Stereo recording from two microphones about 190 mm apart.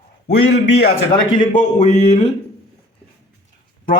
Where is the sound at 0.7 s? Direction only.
60° left (ahead or behind).